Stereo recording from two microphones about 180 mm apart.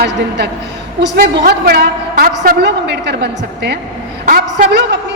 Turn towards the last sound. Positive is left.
turn(degrees=-65)  # may be behind; listen again after turning